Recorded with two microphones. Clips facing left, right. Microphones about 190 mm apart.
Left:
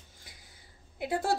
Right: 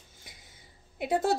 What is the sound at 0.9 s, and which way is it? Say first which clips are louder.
Speech: right 4 dB; 20° right (ahead or behind).